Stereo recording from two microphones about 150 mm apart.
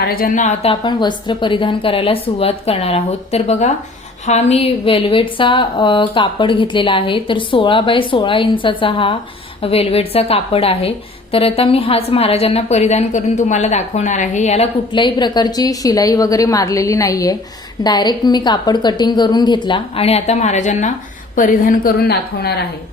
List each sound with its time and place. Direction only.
0.0 s a woman's voice: 85° left; by 0.7 s 55° left (ahead or behind)
0.7 s a woman's voice: 30° left (ahead or behind); by 14.7 s 50° left (ahead or behind)
14.9 s a woman's voice: 30° left (ahead or behind); by 20.9 s 55° left (ahead or behind)
21.3 s a woman's voice: 65° left (ahead or behind); by 22.6 s 90° left